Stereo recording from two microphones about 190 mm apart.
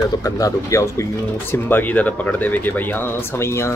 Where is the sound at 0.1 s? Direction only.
20° left (ahead or behind).